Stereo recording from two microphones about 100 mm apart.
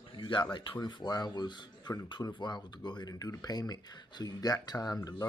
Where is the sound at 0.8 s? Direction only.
45° left (ahead or behind).